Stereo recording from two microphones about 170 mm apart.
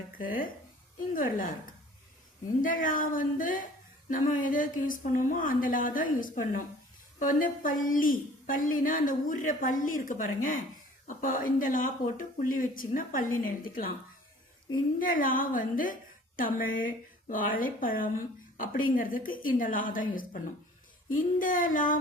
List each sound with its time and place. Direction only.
0.2 s a woman's voice: 55° left (ahead or behind)
2.6 s speech: 50° left (ahead or behind)
14.9 s speech: 55° left (ahead or behind)